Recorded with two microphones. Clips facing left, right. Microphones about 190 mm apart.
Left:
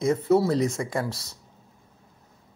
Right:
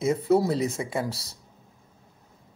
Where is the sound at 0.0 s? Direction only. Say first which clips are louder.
Left 1 dB; 10° right (ahead or behind).